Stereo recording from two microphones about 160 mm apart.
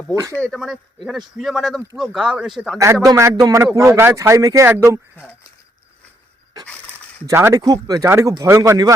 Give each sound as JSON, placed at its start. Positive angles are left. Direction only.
{"t": 0.4, "sound": "speech", "side_deg": 0}
{"t": 2.7, "sound": "speech", "side_deg": -20}
{"t": 7.3, "sound": "speech", "side_deg": -15}